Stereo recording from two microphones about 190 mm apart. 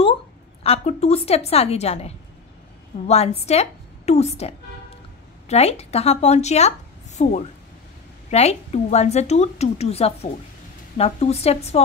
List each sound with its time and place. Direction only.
0.7 s a woman's voice: 35° left (ahead or behind)